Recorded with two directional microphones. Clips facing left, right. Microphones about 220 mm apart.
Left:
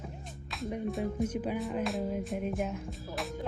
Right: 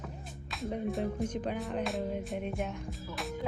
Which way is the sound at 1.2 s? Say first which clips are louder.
Left 2 dB; 5° left (ahead or behind).